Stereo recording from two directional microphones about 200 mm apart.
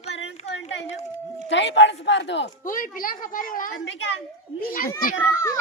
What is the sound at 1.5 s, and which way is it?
Speech, 65° left (ahead or behind).